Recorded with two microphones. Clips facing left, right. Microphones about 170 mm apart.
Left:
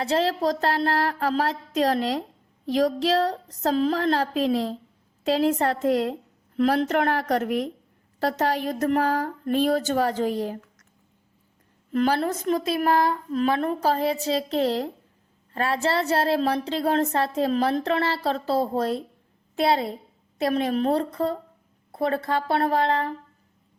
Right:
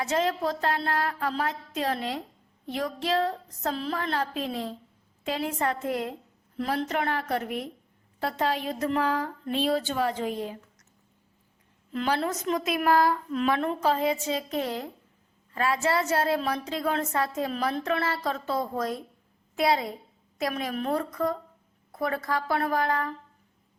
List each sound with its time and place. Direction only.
0.0 s a woman's voice: 35° left (ahead or behind)
6.8 s speech: 50° left (ahead or behind)
11.9 s a woman's voice: 40° left (ahead or behind); by 13.1 s 25° left (ahead or behind)
13.3 s a woman's voice: 35° left (ahead or behind)